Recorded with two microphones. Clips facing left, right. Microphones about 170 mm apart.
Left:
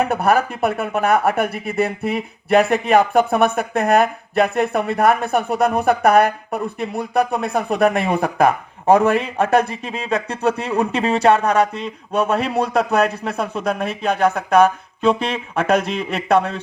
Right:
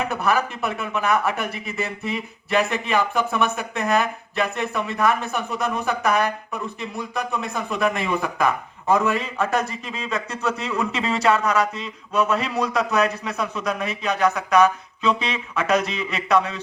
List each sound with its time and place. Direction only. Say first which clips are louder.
0.0 s speech: left 5 dB; 55° left (ahead or behind)